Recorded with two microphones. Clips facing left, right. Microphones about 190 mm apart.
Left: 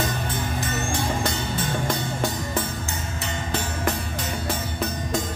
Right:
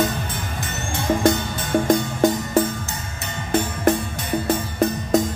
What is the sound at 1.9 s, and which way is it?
Music, 45° right (ahead or behind).